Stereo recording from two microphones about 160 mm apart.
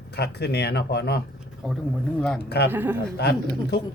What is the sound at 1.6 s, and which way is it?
Speech, centre (ahead or behind).